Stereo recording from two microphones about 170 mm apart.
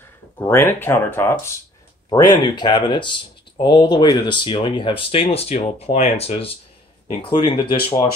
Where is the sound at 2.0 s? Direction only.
25° left (ahead or behind).